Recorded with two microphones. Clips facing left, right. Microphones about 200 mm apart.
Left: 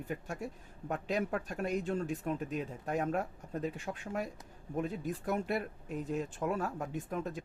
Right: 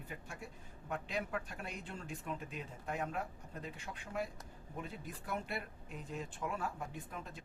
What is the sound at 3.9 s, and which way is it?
Speech, 65° left (ahead or behind).